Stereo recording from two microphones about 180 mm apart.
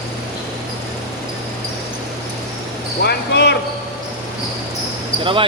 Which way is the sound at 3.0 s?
65° left (ahead or behind).